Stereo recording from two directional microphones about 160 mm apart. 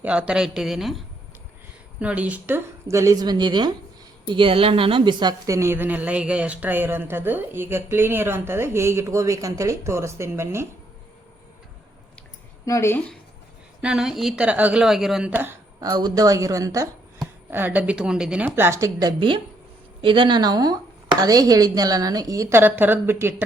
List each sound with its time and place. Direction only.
0.0 s a woman's voice: 10° right (ahead or behind)
12.6 s speech: 20° left (ahead or behind)
13.8 s a woman's voice: 5° right (ahead or behind)
15.3 s a woman's voice: 10° right (ahead or behind)
15.8 s speech: 25° right (ahead or behind)